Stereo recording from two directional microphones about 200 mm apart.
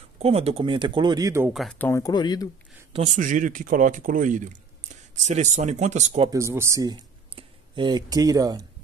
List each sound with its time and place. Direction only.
0.2 s speech: 30° right (ahead or behind)
1.5 s speech: centre (ahead or behind); by 2.4 s 20° left (ahead or behind)
2.9 s speech: 35° right (ahead or behind)
6.3 s speech: 15° right (ahead or behind)